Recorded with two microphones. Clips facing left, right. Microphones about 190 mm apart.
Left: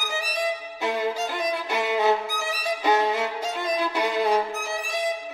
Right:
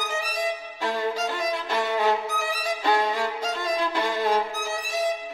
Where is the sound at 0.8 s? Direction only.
15° left (ahead or behind).